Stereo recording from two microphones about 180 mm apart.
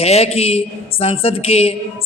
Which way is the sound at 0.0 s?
35° left (ahead or behind).